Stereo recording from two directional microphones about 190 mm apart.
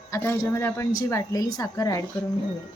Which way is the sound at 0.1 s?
15° left (ahead or behind).